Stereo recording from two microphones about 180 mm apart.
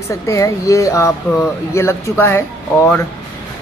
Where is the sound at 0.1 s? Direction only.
15° left (ahead or behind).